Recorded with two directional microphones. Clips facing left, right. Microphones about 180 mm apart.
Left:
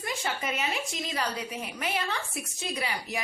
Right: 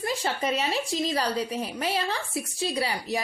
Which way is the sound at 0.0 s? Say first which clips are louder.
Right 5 dB; 35° right (ahead or behind).